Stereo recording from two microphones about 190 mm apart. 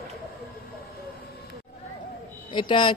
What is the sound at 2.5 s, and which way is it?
Speech, 25° left (ahead or behind).